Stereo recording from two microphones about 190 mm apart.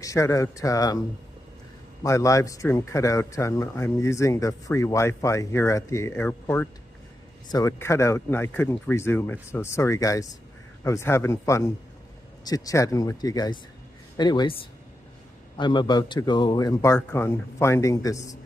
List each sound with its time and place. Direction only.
0.0 s speech: 15° left (ahead or behind)
2.0 s a man's voice: 15° left (ahead or behind)